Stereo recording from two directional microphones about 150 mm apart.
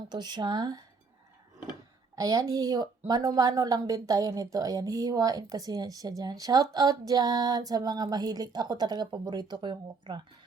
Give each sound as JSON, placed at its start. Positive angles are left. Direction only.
{"t": 0.1, "sound": "speech", "side_deg": -30}
{"t": 2.1, "sound": "speech", "side_deg": -25}